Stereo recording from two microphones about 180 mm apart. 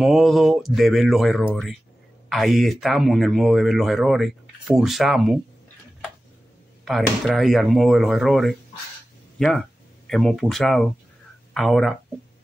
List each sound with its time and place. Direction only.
0.0 s speech: centre (ahead or behind)
6.8 s speech: centre (ahead or behind)